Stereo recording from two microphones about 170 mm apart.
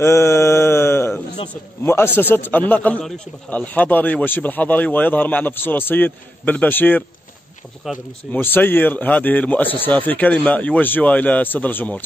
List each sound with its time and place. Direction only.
0.0 s mantra: 15° left (ahead or behind)
1.5 s a man's voice: 15° left (ahead or behind)
7.8 s speech: centre (ahead or behind)
8.3 s a man's voice: 10° left (ahead or behind)